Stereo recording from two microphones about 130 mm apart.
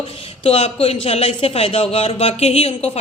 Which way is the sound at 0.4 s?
45° left (ahead or behind).